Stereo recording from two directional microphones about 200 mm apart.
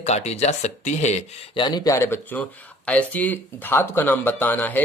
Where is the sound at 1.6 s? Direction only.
20° left (ahead or behind).